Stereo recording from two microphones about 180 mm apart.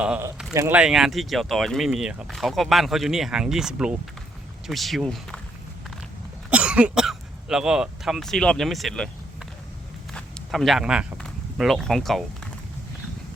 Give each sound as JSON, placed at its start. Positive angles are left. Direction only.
{"t": 0.0, "sound": "speech", "side_deg": -5}
{"t": 0.5, "sound": "speech", "side_deg": -15}
{"t": 0.8, "sound": "speech", "side_deg": -5}
{"t": 6.5, "sound": "speech", "side_deg": -5}